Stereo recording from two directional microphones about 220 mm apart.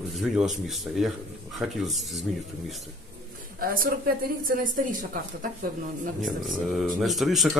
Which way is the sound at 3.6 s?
40° right (ahead or behind).